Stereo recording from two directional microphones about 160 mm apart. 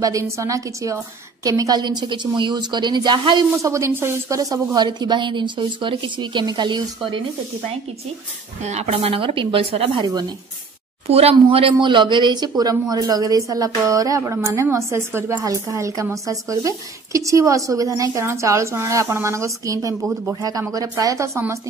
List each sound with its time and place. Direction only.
0.0 s speech: 20° right (ahead or behind)
8.6 s a woman's voice: 45° right (ahead or behind)
11.1 s speech: 40° right (ahead or behind); by 21.5 s 20° right (ahead or behind)